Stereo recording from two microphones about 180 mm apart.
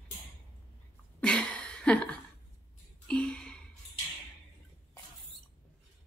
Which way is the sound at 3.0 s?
5° left (ahead or behind).